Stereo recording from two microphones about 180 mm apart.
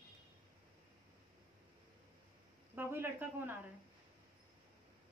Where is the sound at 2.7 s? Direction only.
10° right (ahead or behind).